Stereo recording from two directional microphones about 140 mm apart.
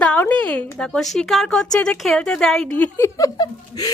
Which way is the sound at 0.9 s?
Centre (ahead or behind).